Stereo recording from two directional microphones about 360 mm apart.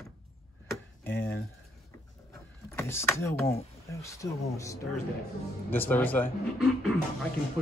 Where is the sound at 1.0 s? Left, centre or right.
Centre.